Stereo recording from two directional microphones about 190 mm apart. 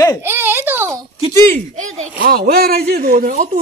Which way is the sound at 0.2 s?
10° right (ahead or behind).